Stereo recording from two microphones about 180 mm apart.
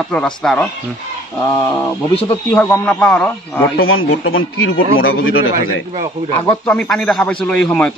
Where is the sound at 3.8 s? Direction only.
90° left.